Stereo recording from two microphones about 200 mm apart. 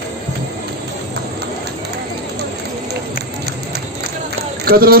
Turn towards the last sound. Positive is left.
turn(degrees=-50)  # may be behind; listen again after turning